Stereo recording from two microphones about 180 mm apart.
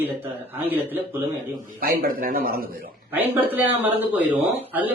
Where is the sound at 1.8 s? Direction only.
55° right (ahead or behind).